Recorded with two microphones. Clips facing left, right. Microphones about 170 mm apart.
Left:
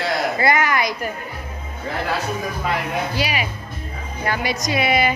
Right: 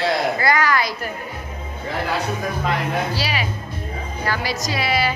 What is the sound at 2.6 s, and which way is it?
Speech, 15° left (ahead or behind).